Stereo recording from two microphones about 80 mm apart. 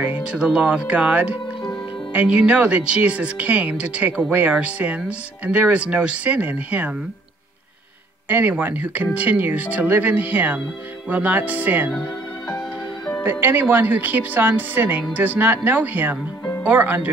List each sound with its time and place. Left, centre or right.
0.0 s speech: centre
8.3 s speech: right
13.2 s speech: right